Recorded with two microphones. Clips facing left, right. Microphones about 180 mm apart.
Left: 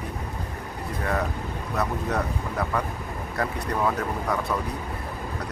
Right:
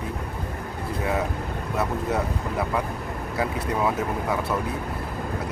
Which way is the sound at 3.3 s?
5° right (ahead or behind).